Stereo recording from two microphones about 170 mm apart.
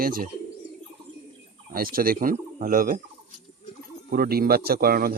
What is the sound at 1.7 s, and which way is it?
Speech, 60° right (ahead or behind).